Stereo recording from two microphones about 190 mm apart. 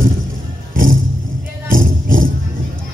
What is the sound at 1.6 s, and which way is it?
Music, 45° right (ahead or behind).